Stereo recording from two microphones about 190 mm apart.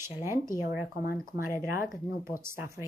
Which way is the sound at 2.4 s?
15° right (ahead or behind).